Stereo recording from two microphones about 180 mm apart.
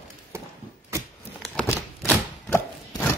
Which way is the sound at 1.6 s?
10° left (ahead or behind).